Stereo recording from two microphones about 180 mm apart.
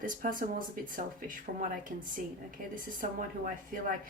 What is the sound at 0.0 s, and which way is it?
Speech, 50° right (ahead or behind).